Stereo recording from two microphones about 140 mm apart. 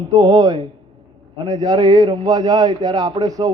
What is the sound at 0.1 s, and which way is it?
A man's voice, 25° right (ahead or behind).